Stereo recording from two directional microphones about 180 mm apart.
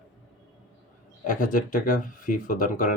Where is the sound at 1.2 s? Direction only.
45° left (ahead or behind).